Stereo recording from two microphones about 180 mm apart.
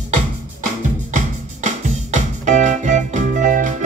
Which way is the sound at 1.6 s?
40° right (ahead or behind).